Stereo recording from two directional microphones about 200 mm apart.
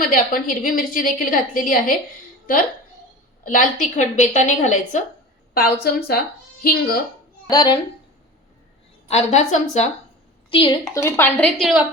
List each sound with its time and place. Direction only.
0.0 s a woman's voice: 45° left (ahead or behind)
3.4 s a woman's voice: 40° left (ahead or behind)
5.5 s a woman's voice: 50° left (ahead or behind)
7.5 s speech: 20° left (ahead or behind)
9.0 s a woman's voice: 35° left (ahead or behind)
10.5 s a woman's voice: 25° left (ahead or behind)
11.5 s a woman's voice: centre (ahead or behind)